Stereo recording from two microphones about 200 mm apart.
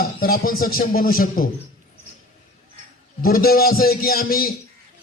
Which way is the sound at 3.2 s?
50° left (ahead or behind).